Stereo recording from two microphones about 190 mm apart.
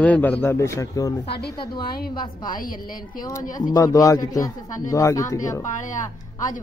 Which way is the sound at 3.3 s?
15° left (ahead or behind).